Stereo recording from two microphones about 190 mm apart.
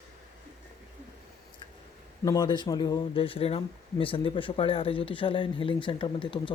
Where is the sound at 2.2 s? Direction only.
20° left (ahead or behind).